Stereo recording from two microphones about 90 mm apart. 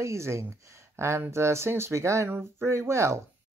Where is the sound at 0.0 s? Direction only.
30° right (ahead or behind).